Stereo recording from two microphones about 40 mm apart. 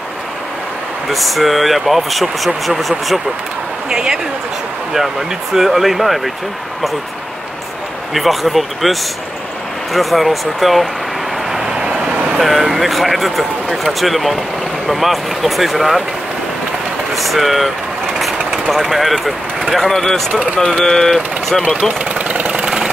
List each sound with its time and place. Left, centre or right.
1.0 s speech: centre
3.9 s speech: centre
4.9 s speech: centre
8.1 s speech: centre
9.9 s speech: centre
11.5 s vehicle: centre
11.8 s vehicle: right
12.4 s speech: centre
17.1 s speech: centre
18.2 s vehicle: centre
19.7 s speech: centre
22.1 s engine: right